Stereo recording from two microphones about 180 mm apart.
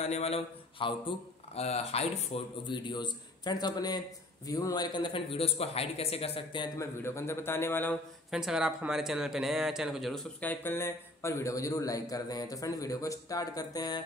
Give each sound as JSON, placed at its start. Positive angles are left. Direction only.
{"t": 0.0, "sound": "speech", "side_deg": 35}
{"t": 7.0, "sound": "speech", "side_deg": 15}
{"t": 8.3, "sound": "speech", "side_deg": -5}